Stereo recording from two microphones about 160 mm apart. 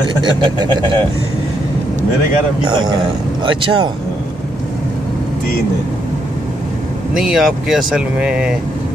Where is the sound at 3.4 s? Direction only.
30° right (ahead or behind).